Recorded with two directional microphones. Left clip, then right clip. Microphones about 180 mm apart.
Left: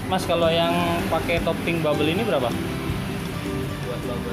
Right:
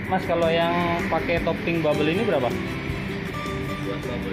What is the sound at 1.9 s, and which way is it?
Speech, 5° right (ahead or behind).